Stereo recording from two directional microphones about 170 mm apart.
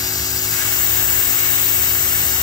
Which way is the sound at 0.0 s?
20° left (ahead or behind).